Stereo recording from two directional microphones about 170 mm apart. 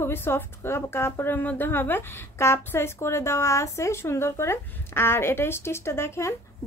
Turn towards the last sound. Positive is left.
turn(degrees=15)  # may be behind; listen again after turning